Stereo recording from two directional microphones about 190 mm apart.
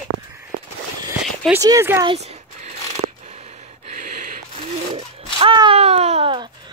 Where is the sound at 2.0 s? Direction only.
35° right (ahead or behind).